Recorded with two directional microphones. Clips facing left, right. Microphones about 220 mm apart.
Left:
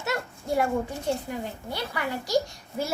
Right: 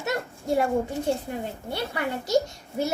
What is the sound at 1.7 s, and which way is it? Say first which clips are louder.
Speech: right 3 dB; 25° right (ahead or behind).